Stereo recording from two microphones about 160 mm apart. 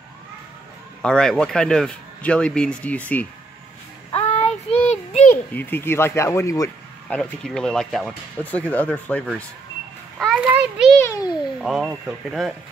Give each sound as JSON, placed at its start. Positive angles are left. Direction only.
{"t": 1.0, "sound": "speech", "side_deg": 5}
{"t": 4.1, "sound": "child singing", "side_deg": 40}
{"t": 5.3, "sound": "speech", "side_deg": 10}
{"t": 7.1, "sound": "speech", "side_deg": 5}
{"t": 10.1, "sound": "children playing", "side_deg": 0}
{"t": 10.4, "sound": "a sound", "side_deg": -10}
{"t": 10.9, "sound": "a child's voice", "side_deg": 15}
{"t": 11.6, "sound": "speech", "side_deg": -5}